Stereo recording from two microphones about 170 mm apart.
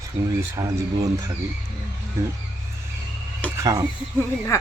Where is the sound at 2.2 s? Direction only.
15° right (ahead or behind).